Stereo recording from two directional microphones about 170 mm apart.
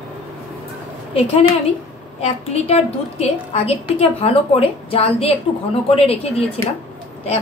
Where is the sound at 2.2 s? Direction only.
40° left (ahead or behind).